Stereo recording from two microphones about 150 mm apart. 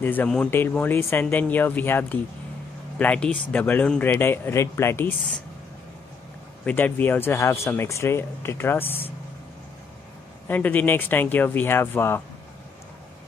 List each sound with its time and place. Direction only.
0.0 s speech: 10° left (ahead or behind)
6.6 s speech: 10° left (ahead or behind)
10.5 s speech: 10° left (ahead or behind)